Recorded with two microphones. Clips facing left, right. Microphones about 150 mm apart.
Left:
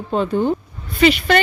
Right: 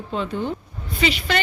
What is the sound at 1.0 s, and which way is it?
Speech, 55° left (ahead or behind).